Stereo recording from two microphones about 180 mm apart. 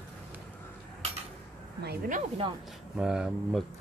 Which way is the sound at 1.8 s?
60° right (ahead or behind).